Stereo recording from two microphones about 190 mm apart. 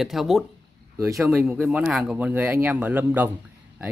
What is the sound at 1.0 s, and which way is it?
Speech, 15° right (ahead or behind).